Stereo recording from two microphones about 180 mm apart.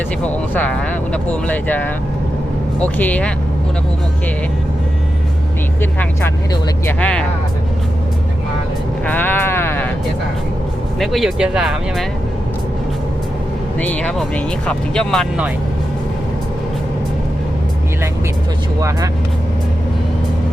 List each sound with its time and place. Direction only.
0.2 s speech: 10° left (ahead or behind)
5.8 s speech: 10° left (ahead or behind)
9.0 s sheep: 10° left (ahead or behind)
11.0 s speech: centre (ahead or behind)
13.7 s speech: 10° left (ahead or behind)